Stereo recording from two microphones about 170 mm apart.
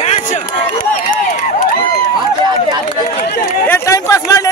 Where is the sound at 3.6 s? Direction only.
15° left (ahead or behind).